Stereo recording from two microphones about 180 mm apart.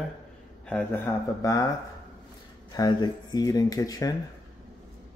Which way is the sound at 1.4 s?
20° left (ahead or behind).